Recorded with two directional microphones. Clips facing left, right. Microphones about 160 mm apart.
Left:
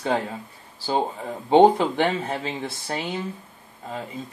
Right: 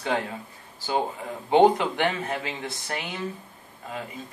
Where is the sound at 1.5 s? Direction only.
30° left (ahead or behind).